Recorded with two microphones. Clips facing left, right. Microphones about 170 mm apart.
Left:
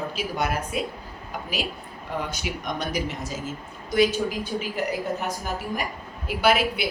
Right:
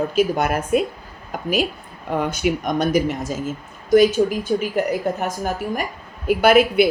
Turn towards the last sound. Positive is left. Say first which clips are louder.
# right 8 dB
turn(degrees=-50)  # may be behind; listen again after turning